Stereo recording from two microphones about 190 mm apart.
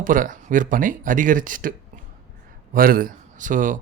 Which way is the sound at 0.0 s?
45° right (ahead or behind).